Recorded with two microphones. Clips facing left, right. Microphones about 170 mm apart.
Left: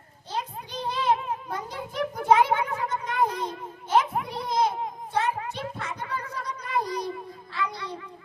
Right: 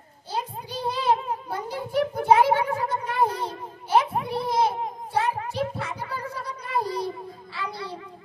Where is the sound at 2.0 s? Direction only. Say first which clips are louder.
Right 2 dB; 30° right (ahead or behind).